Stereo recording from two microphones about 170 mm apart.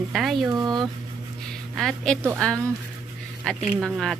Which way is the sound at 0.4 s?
25° right (ahead or behind).